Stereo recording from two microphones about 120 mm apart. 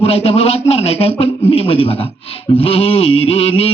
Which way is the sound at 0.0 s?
55° left (ahead or behind).